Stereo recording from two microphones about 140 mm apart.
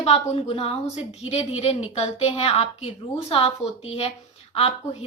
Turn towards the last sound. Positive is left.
turn(degrees=45)  # may be behind; listen again after turning